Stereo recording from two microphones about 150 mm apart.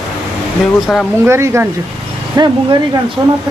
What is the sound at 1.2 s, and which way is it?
Speech, 15° right (ahead or behind).